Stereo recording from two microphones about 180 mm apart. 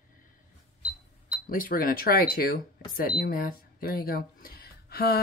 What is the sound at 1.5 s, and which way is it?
Speech, 50° left (ahead or behind).